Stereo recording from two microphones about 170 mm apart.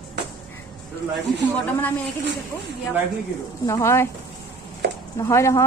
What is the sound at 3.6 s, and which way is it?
Speech, 15° left (ahead or behind).